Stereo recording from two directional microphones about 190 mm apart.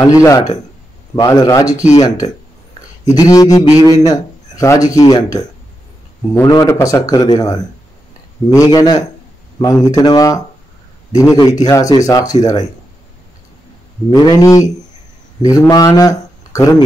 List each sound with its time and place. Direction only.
0.0 s a man's voice: 15° left (ahead or behind)
14.1 s a man's voice: 20° left (ahead or behind)
15.7 s speech: 20° left (ahead or behind)